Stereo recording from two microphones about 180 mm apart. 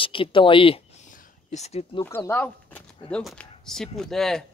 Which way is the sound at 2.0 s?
10° left (ahead or behind).